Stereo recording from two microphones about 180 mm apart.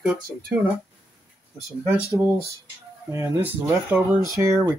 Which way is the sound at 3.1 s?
15° right (ahead or behind).